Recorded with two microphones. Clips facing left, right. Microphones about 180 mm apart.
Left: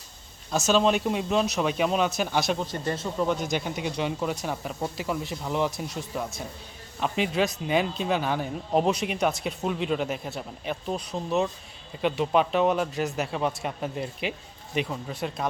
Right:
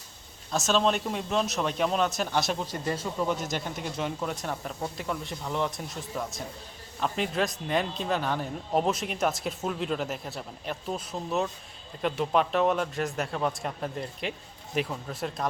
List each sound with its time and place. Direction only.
0.5 s a man's voice: centre (ahead or behind)